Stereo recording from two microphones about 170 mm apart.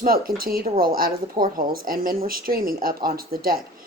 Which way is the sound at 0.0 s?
60° right (ahead or behind).